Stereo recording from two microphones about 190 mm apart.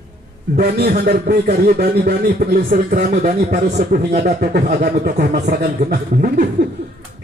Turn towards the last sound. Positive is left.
turn(degrees=-45)  # may be behind; listen again after turning